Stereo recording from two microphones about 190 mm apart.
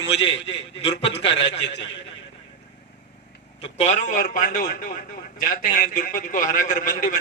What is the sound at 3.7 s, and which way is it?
A man's voice, 35° left (ahead or behind).